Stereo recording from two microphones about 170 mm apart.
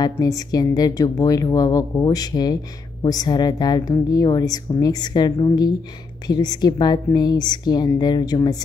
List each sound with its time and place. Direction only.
0.0 s speech: 20° left (ahead or behind)